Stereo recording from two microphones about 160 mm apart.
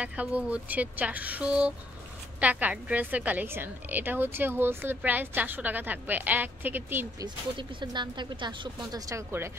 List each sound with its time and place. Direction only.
0.0 s a woman's voice: 10° right (ahead or behind)
7.2 s speech: 30° right (ahead or behind)